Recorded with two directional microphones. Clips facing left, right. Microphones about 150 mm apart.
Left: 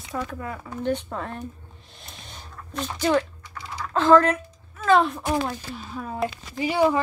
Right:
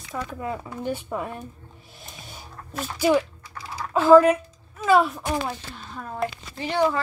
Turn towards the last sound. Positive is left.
turn(degrees=10)  # may be behind; listen again after turning